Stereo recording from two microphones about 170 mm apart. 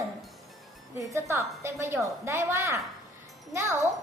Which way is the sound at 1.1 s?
15° right (ahead or behind).